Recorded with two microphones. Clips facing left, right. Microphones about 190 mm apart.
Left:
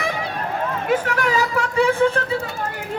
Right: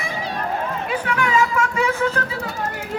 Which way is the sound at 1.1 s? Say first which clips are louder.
Right 1 dB; 40° left (ahead or behind).